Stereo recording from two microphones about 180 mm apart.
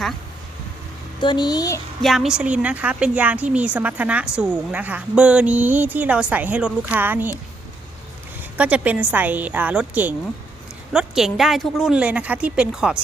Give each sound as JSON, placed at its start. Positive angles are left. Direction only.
{"t": 1.2, "sound": "a woman's voice", "side_deg": 25}
{"t": 2.0, "sound": "a woman's voice", "side_deg": 0}
{"t": 8.5, "sound": "a woman's voice", "side_deg": -5}